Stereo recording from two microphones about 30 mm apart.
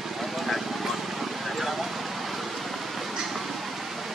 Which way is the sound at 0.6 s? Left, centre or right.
Centre.